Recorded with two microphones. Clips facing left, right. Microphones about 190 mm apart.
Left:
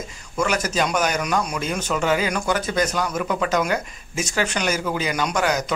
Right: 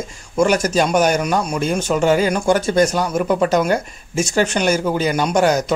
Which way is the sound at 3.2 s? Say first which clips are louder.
Right 7 dB; 40° right (ahead or behind).